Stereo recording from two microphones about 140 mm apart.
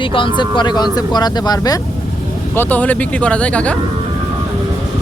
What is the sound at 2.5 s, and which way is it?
Speech, 15° left (ahead or behind).